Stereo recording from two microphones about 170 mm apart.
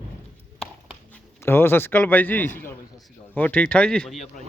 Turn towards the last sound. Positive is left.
turn(degrees=5)  # may be behind; listen again after turning